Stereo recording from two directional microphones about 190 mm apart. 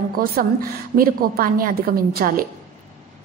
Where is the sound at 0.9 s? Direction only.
50° right (ahead or behind).